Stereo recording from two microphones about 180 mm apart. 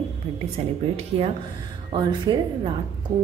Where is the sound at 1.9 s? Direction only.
25° right (ahead or behind).